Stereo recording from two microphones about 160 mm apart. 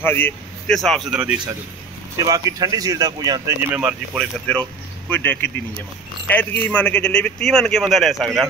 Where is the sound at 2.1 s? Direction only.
25° right (ahead or behind).